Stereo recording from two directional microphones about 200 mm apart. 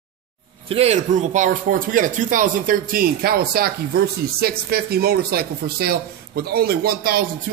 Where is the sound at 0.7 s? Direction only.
30° right (ahead or behind).